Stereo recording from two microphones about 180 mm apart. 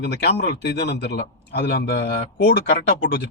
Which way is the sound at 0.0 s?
65° left (ahead or behind).